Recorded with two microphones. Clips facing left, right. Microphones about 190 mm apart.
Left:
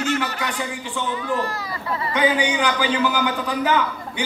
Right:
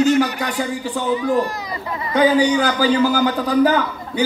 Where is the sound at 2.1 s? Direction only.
40° right (ahead or behind).